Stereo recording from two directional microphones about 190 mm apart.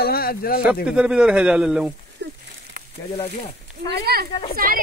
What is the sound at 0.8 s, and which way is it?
Speech, 5° right (ahead or behind).